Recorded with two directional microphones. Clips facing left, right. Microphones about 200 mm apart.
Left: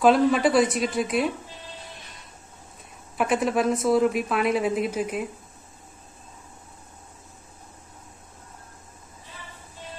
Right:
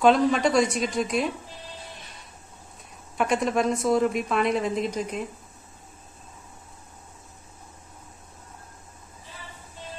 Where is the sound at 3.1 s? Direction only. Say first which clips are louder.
Left 1 dB; 5° left (ahead or behind).